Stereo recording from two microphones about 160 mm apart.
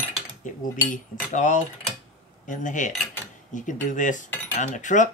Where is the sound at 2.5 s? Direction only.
55° left (ahead or behind).